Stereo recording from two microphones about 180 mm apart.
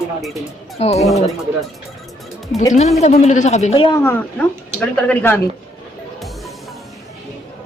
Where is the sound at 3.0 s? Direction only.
40° left (ahead or behind).